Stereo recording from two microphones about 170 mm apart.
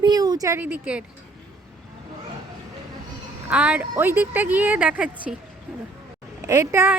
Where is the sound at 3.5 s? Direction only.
5° right (ahead or behind).